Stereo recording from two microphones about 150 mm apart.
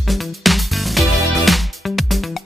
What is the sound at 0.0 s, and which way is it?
Music, centre (ahead or behind).